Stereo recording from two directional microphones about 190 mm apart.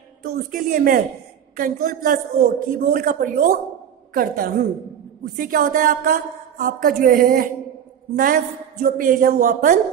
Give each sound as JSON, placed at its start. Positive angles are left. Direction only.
{"t": 0.2, "sound": "speech", "side_deg": -50}
{"t": 8.8, "sound": "speech", "side_deg": -45}